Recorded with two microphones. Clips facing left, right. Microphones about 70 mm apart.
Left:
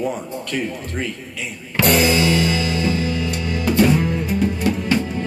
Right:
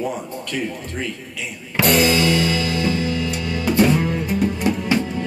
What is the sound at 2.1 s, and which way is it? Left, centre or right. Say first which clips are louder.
Music: even; left.